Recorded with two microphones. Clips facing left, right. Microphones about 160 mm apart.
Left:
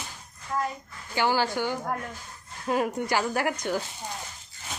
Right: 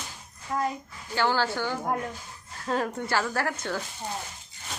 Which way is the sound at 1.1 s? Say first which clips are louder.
Left 1 dB; 15° left (ahead or behind).